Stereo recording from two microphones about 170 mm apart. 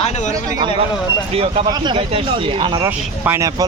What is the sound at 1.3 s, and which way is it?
Speech, 35° right (ahead or behind).